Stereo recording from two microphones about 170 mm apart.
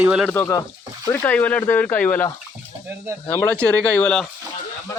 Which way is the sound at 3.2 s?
10° left (ahead or behind).